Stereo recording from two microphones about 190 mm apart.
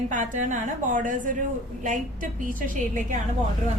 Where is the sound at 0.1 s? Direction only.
40° right (ahead or behind).